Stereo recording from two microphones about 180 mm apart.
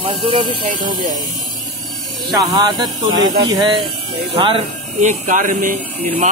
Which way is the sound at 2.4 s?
20° right (ahead or behind).